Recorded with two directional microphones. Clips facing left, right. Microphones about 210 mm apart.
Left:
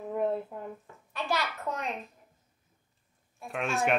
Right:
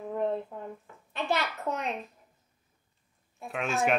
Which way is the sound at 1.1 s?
20° right (ahead or behind).